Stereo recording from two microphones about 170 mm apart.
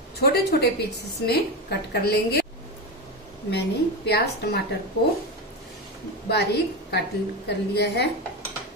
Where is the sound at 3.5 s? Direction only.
75° left (ahead or behind).